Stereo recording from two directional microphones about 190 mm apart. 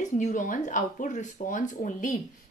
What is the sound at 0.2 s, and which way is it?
A woman's voice, 40° left (ahead or behind).